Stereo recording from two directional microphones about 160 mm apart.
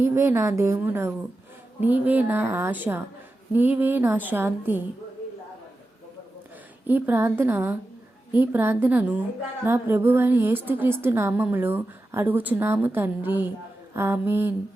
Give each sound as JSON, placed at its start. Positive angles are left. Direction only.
{"t": 0.0, "sound": "a woman's voice", "side_deg": -15}
{"t": 6.8, "sound": "a woman's voice", "side_deg": -10}